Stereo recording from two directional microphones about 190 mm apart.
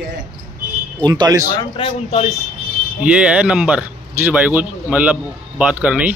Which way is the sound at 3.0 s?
5° right (ahead or behind).